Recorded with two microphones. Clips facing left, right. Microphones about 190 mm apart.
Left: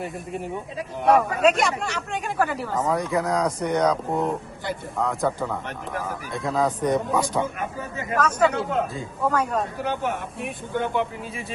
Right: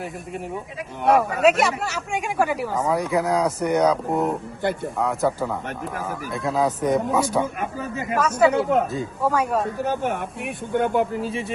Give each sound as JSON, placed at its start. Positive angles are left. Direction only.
{"t": 0.0, "sound": "speech", "side_deg": 0}
{"t": 9.7, "sound": "speech", "side_deg": -45}
{"t": 11.2, "sound": "speech", "side_deg": -30}